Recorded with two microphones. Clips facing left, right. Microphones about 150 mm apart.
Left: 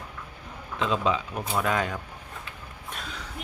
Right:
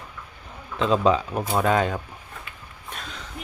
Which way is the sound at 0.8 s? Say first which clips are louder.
Right 6 dB; 40° right (ahead or behind).